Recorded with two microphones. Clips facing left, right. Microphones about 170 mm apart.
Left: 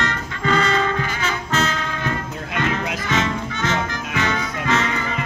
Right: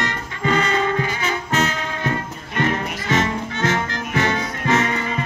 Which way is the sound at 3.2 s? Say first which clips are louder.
Right 2 dB; 50° right (ahead or behind).